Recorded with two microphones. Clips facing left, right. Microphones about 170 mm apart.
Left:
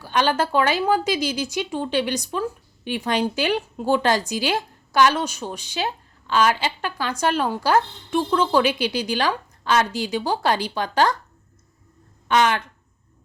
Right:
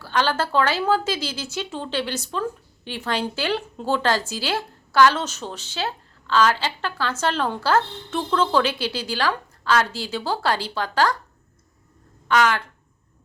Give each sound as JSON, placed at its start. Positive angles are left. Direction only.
{"t": 0.0, "sound": "a woman's voice", "side_deg": 15}
{"t": 12.3, "sound": "speech", "side_deg": 20}